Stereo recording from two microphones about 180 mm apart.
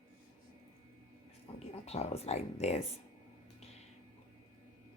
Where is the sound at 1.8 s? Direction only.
35° left (ahead or behind).